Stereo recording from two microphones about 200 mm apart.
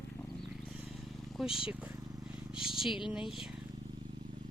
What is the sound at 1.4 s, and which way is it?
Speech, centre (ahead or behind).